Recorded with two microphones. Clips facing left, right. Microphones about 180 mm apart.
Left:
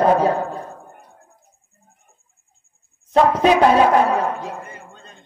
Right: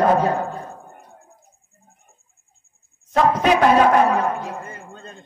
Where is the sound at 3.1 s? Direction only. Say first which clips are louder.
Left 3 dB; 30° left (ahead or behind).